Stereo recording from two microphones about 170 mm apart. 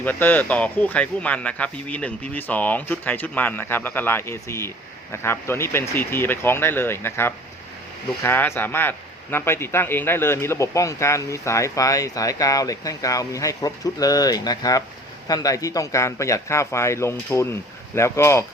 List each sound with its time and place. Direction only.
0.0 s a man's voice: 10° left (ahead or behind)